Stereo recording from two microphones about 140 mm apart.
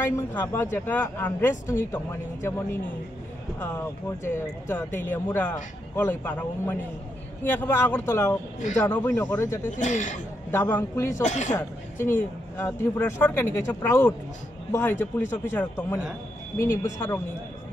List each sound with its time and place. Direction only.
0.0 s speech: 15° left (ahead or behind)
9.8 s a man's voice: 60° left (ahead or behind)
10.5 s speech: 15° left (ahead or behind)
11.2 s a man's voice: 55° left (ahead or behind)
11.5 s speech: 20° left (ahead or behind)